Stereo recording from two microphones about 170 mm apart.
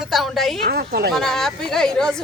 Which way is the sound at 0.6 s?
65° right (ahead or behind).